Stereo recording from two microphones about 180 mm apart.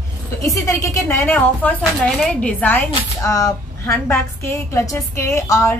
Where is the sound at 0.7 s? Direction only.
15° left (ahead or behind).